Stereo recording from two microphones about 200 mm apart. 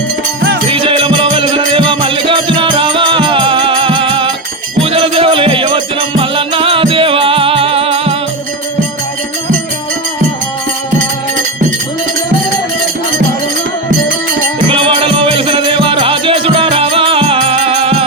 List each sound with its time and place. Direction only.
0.7 s music: 25° right (ahead or behind)
14.7 s music: 25° right (ahead or behind)